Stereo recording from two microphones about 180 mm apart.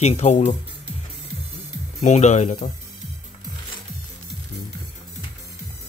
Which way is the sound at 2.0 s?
40° left (ahead or behind).